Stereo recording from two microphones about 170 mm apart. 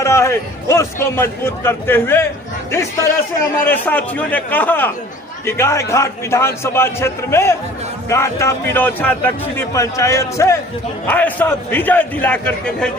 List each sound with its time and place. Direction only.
0.0 s a man's voice: 15° left (ahead or behind)
3.4 s a man's voice: 10° left (ahead or behind)